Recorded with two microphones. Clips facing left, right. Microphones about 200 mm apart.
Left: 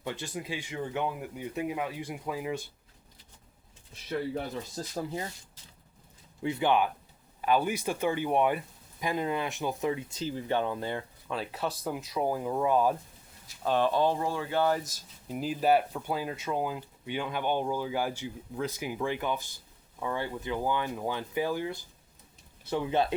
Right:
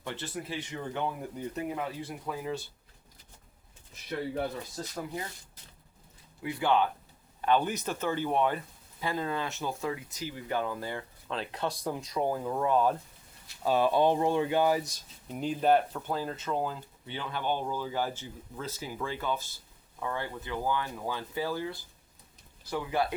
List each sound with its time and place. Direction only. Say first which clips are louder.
0.0 s speech: left 1 dB; 15° left (ahead or behind)
4.8 s speech: left 1 dB; 30° left (ahead or behind)
6.4 s speech: left 1 dB; 20° left (ahead or behind)
11.3 s speech: even; 5° left (ahead or behind)
13.6 s speech: right 1 dB; 10° right (ahead or behind)
14.8 s speech: right 3 dB; 5° left (ahead or behind); by 23.1 s 25° left (ahead or behind)